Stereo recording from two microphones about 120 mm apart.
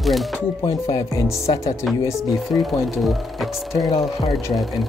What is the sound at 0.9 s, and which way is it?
Speech, 25° left (ahead or behind).